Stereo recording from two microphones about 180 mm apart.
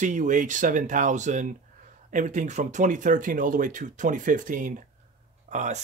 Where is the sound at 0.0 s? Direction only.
45° right (ahead or behind).